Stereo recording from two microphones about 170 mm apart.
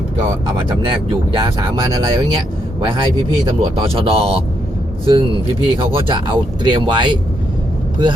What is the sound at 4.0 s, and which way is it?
Speech, 35° right (ahead or behind).